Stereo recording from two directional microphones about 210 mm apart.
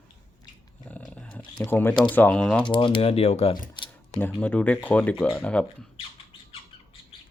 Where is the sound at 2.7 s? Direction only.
25° left (ahead or behind).